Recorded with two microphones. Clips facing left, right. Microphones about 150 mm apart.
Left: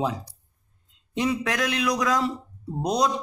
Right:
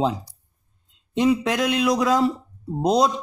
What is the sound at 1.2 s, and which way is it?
Speech, 25° right (ahead or behind).